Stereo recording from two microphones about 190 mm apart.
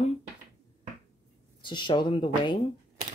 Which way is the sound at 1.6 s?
25° left (ahead or behind).